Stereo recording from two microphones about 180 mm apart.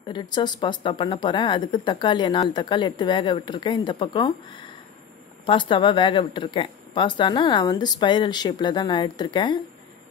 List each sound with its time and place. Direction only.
0.0 s speech: 25° left (ahead or behind)